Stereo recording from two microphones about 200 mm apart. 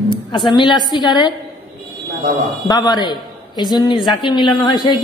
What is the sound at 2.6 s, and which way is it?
A woman's voice, 20° left (ahead or behind).